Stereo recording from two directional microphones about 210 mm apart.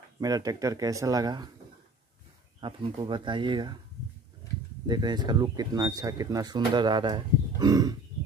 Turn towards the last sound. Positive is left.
turn(degrees=-20)  # may be behind; listen again after turning